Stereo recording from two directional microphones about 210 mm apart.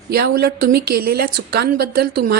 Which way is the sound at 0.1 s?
45° right (ahead or behind).